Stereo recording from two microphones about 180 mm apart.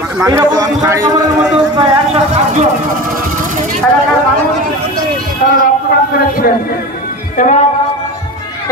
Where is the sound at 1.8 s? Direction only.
35° right (ahead or behind).